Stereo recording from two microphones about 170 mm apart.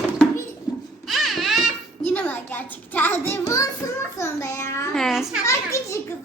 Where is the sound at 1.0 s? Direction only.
Centre (ahead or behind).